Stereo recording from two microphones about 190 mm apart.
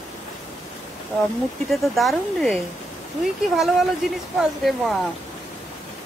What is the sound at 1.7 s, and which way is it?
Speech, centre (ahead or behind).